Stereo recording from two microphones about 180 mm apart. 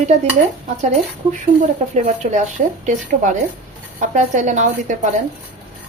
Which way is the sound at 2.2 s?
45° right (ahead or behind).